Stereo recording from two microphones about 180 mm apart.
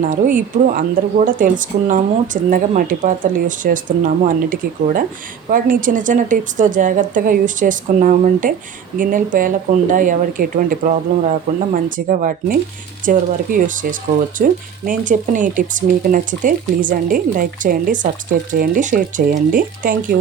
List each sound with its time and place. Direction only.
0.1 s speech: 45° right (ahead or behind)